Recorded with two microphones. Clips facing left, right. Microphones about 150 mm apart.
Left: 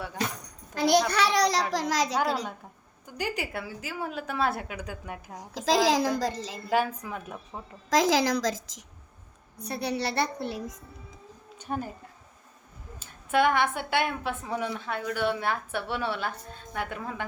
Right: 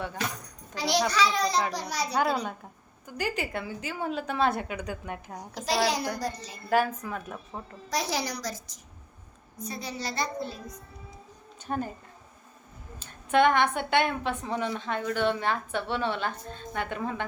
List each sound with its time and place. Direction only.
0.7 s a child's voice: 50° left (ahead or behind)
1.1 s a child's voice: 70° left (ahead or behind); by 2.3 s 90° left
3.2 s a woman's voice: 15° left (ahead or behind)
5.5 s a woman's voice: 90° left
6.7 s a woman's voice: 15° left (ahead or behind)
7.9 s a woman's voice: 90° left
9.6 s a woman's voice: 65° left (ahead or behind)
11.6 s speech: 10° left (ahead or behind)
13.0 s a woman's voice: 5° left (ahead or behind)